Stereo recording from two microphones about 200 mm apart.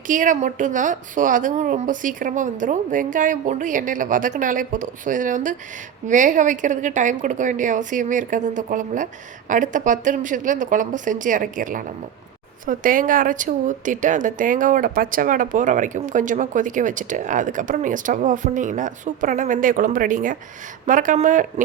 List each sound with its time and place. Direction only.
0.1 s speech: 40° right (ahead or behind)